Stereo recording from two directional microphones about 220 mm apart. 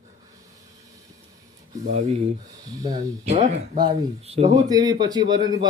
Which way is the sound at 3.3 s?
30° right (ahead or behind).